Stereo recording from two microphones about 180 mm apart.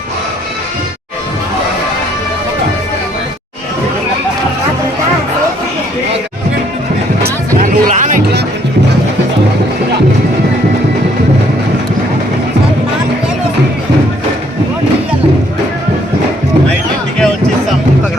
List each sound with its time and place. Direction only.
7.2 s music: 50° right (ahead or behind)